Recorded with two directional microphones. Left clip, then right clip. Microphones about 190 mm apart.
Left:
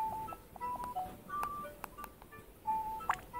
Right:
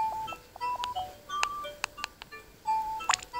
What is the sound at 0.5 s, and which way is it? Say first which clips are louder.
Music: right 7 dB; 30° right (ahead or behind).